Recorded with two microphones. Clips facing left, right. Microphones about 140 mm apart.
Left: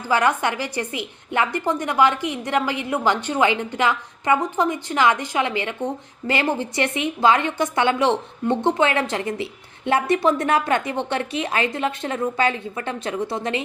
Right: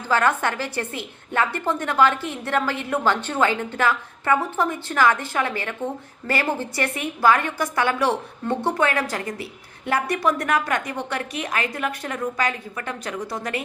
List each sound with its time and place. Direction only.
0.0 s a woman's voice: 15° left (ahead or behind)